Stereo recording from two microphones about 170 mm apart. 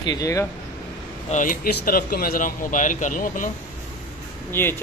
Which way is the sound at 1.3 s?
50° left (ahead or behind).